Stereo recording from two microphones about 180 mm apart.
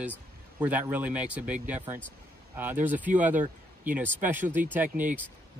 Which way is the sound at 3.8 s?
10° right (ahead or behind).